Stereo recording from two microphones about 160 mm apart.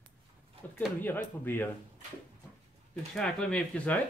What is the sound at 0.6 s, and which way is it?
Speech, 10° left (ahead or behind).